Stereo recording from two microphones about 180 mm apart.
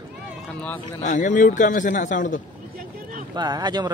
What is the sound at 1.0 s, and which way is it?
A man's voice, 45° left (ahead or behind).